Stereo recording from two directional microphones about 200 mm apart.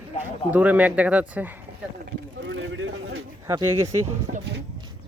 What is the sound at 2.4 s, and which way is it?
Speech, 75° right (ahead or behind).